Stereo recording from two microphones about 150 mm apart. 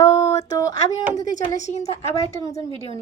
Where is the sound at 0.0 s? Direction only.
20° left (ahead or behind).